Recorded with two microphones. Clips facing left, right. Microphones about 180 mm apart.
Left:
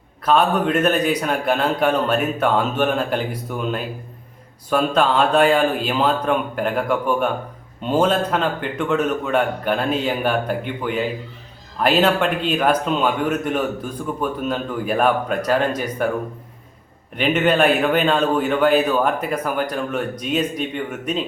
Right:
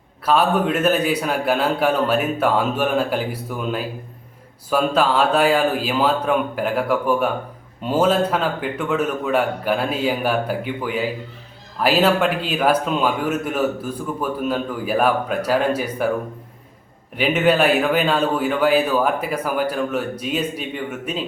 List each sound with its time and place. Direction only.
0.3 s speech: 5° right (ahead or behind)
4.9 s a man's voice: 5° right (ahead or behind)
17.2 s speech: 5° right (ahead or behind)